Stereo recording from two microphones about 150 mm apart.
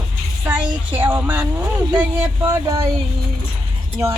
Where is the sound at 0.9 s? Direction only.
10° right (ahead or behind).